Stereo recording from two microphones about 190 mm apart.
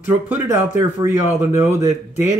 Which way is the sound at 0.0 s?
10° right (ahead or behind).